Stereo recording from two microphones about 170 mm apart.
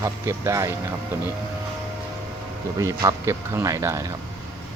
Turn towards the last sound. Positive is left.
turn(degrees=-20)  # may be behind; listen again after turning